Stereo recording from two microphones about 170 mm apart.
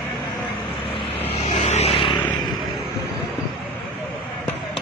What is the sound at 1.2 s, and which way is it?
Vehicle, 40° left (ahead or behind).